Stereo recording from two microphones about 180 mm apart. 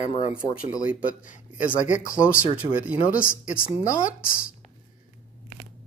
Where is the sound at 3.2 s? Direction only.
50° left (ahead or behind).